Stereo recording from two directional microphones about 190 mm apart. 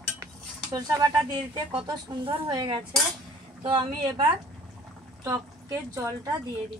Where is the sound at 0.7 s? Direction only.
20° right (ahead or behind).